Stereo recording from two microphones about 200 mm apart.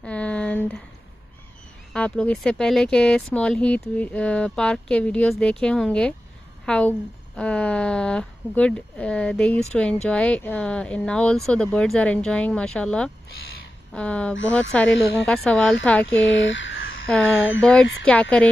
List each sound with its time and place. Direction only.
0.0 s a sound: 5° left (ahead or behind)
2.0 s speech: 5° left (ahead or behind)
16.2 s speech: 65° left (ahead or behind)
17.1 s speech: 5° left (ahead or behind)